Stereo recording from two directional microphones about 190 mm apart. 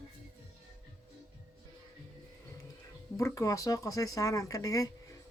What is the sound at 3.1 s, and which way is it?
Speech, 15° left (ahead or behind).